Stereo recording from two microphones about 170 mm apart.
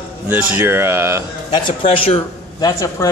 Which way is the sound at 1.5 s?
30° left (ahead or behind).